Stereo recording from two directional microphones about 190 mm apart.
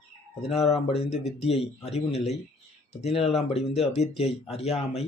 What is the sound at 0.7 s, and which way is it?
Speech, 35° left (ahead or behind).